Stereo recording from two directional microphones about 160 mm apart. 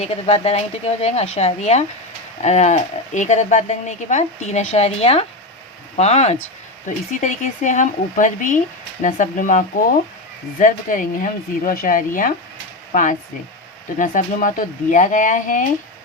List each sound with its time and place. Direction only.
0.0 s speech: 45° left (ahead or behind)